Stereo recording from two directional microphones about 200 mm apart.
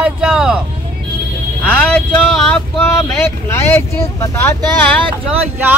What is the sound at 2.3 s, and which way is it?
Speech, centre (ahead or behind).